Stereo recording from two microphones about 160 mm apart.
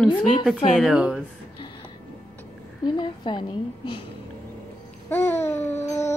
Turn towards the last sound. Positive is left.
turn(degrees=15)  # may be behind; listen again after turning